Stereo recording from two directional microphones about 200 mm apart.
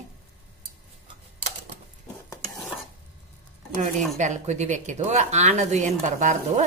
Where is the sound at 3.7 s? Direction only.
35° right (ahead or behind).